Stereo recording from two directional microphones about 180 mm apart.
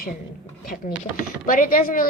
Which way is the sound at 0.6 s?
50° left (ahead or behind).